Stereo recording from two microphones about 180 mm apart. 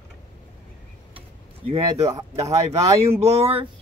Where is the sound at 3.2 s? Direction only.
35° right (ahead or behind).